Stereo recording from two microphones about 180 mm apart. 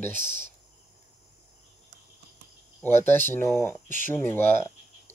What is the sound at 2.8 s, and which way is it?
Speech, 10° left (ahead or behind).